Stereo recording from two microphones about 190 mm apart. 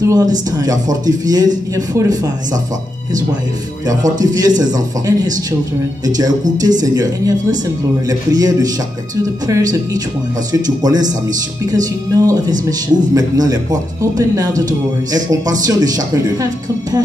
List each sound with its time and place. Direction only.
0.0 s speech: 20° right (ahead or behind)
4.2 s speech: 20° right (ahead or behind)